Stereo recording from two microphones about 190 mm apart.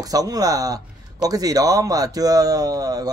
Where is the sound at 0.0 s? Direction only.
20° right (ahead or behind).